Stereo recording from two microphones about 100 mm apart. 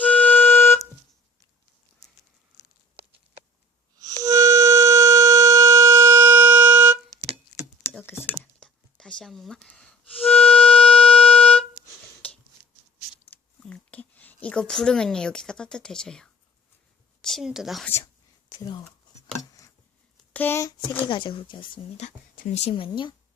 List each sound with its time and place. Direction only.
0.0 s music: 15° left (ahead or behind)
4.2 s wind instrument: 35° right (ahead or behind)
8.0 s computer keyboard: 20° left (ahead or behind)
8.6 s music: 5° left (ahead or behind)
13.3 s a sound: 15° left (ahead or behind)
14.4 s a woman's voice: 10° left (ahead or behind)
17.8 s speech: 25° left (ahead or behind)
18.6 s speech: 45° left (ahead or behind)
19.4 s a sound: 35° left (ahead or behind)
20.3 s a sound: 20° left (ahead or behind)
21.1 s speech: 55° left (ahead or behind)
22.5 s speech: 75° left (ahead or behind); by 23.1 s 55° left (ahead or behind)